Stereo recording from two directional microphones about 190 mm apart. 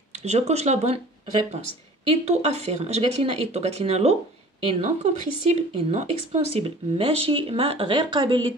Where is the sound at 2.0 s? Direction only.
35° right (ahead or behind).